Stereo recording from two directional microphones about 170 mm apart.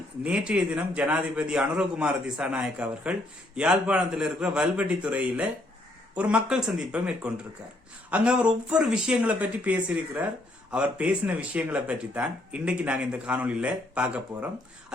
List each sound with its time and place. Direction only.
0.3 s a man's voice: 5° right (ahead or behind)